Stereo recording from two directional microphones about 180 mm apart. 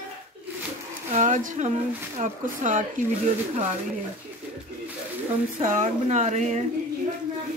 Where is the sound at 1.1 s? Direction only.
45° right (ahead or behind).